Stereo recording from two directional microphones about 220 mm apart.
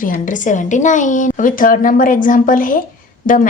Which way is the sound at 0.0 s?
35° left (ahead or behind).